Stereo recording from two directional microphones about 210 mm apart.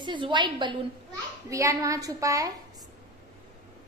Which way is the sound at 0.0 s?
20° right (ahead or behind).